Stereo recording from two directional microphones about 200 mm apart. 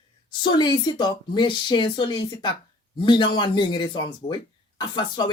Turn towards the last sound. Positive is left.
turn(degrees=20)  # may be behind; listen again after turning